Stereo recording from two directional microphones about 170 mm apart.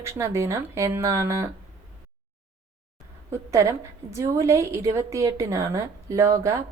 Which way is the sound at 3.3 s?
15° right (ahead or behind).